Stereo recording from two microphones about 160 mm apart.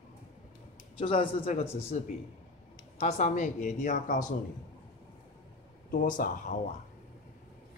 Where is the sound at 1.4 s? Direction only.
45° left (ahead or behind).